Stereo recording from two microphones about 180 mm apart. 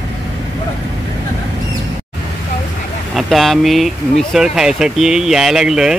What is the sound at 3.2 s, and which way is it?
Speech, centre (ahead or behind).